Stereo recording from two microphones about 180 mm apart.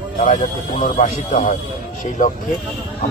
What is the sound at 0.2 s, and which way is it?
Speech, 45° left (ahead or behind).